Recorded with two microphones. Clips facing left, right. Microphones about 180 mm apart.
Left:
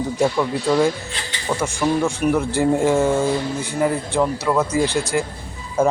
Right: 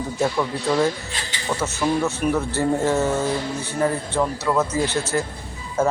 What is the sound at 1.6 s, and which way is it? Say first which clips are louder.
Speech: left 2 dB; 10° left (ahead or behind).